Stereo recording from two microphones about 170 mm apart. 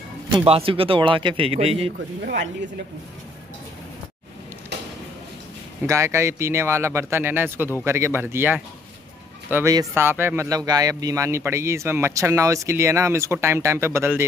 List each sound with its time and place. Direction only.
0.3 s speech: 30° right (ahead or behind)
5.9 s speech: 15° right (ahead or behind)